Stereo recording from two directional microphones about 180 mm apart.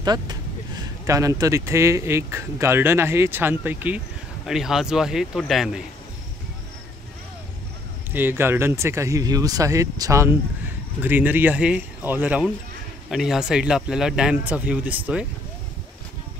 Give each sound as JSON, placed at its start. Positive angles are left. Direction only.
{"t": 0.0, "sound": "speech", "side_deg": -20}
{"t": 8.1, "sound": "speech", "side_deg": -10}